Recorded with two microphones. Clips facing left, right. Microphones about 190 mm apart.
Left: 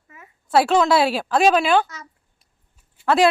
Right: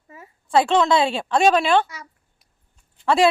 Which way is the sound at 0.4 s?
5° left (ahead or behind).